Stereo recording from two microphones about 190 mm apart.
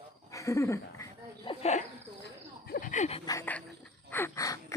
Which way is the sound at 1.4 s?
30° left (ahead or behind).